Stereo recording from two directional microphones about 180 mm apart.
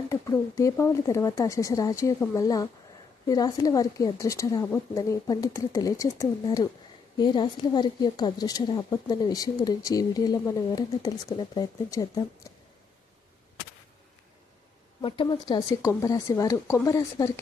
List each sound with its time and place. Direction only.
0.1 s a woman's voice: 15° left (ahead or behind)
15.0 s a woman's voice: 25° left (ahead or behind)